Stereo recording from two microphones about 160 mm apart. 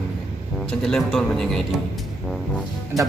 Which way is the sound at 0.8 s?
5° left (ahead or behind).